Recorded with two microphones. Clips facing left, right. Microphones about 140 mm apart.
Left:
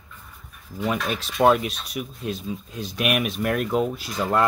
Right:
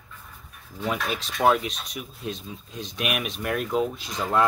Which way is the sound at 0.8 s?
Centre (ahead or behind).